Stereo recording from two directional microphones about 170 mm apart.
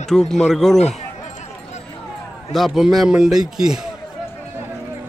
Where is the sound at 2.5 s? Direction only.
Centre (ahead or behind).